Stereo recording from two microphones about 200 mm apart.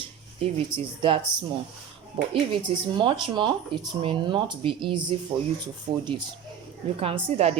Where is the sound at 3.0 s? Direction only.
25° right (ahead or behind).